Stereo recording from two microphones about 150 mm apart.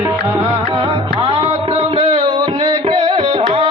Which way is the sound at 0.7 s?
35° right (ahead or behind).